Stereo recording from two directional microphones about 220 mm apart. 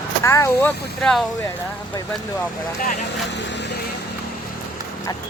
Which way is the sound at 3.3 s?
55° left (ahead or behind).